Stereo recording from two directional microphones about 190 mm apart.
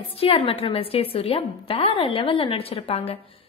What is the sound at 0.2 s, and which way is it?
A woman's voice, 30° left (ahead or behind).